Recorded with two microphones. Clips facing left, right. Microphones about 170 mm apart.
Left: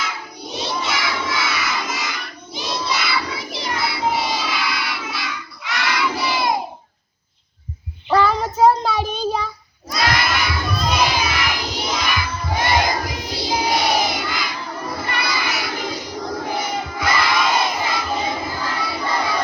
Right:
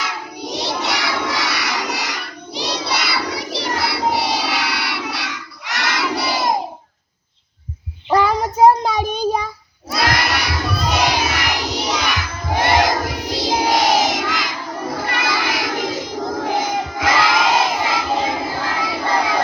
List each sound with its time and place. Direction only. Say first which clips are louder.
0.0 s child singing: right 3 dB; 70° right (ahead or behind)
8.1 s child singing: right 1 dB; 15° right (ahead or behind)
9.9 s crowd: right 1 dB; 70° right (ahead or behind)
12.3 s child singing: right 4 dB; 60° right (ahead or behind); by 19.4 s 90° right